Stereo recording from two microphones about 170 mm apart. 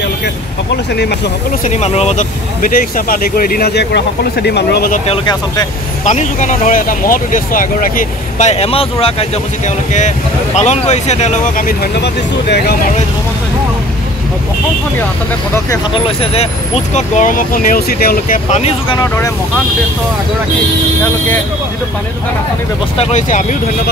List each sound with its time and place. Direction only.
0.9 s speech: 75° left (ahead or behind)
1.7 s speech: 40° left (ahead or behind); by 5.0 s 65° left (ahead or behind)
5.0 s speech: 30° left (ahead or behind)
6.0 s speech: 45° left (ahead or behind); by 12.7 s 75° left (ahead or behind)
15.9 s speech: 35° left (ahead or behind); by 18.4 s 60° left (ahead or behind)
18.5 s speech: 35° left (ahead or behind)
22.9 s speech: 35° left (ahead or behind)